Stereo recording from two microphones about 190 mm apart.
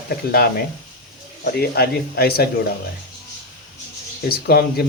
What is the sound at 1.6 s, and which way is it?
Speech, 55° left (ahead or behind).